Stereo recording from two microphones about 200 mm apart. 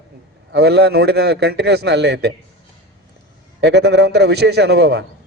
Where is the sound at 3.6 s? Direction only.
55° right (ahead or behind).